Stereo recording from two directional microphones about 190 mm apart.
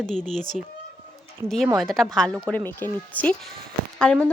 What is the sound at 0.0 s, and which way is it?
A woman's voice, 5° left (ahead or behind).